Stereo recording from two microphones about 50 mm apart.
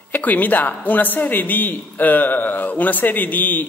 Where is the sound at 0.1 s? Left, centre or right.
Left.